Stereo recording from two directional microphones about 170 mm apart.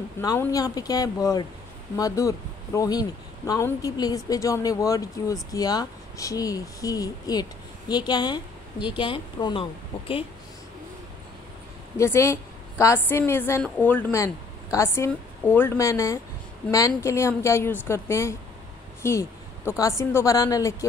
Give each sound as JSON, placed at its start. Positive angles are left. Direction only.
{"t": 0.2, "sound": "speech", "side_deg": 20}
{"t": 12.0, "sound": "a woman's voice", "side_deg": 15}